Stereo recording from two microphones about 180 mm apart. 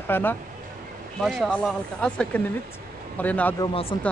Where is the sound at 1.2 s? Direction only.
Centre (ahead or behind).